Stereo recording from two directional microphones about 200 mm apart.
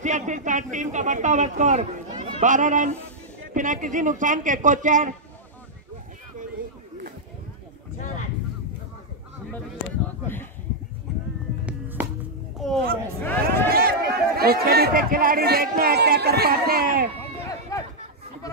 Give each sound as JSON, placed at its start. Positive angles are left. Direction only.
{"t": 0.0, "sound": "a man's voice", "side_deg": -35}
{"t": 9.5, "sound": "a sound", "side_deg": 10}
{"t": 11.6, "sound": "music", "side_deg": -10}
{"t": 12.5, "sound": "a sound", "side_deg": 0}
{"t": 13.4, "sound": "speech", "side_deg": -50}
{"t": 17.2, "sound": "run", "side_deg": 15}